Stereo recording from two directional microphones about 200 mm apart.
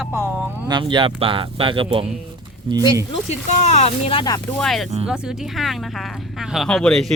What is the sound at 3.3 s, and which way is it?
Speech, 35° left (ahead or behind).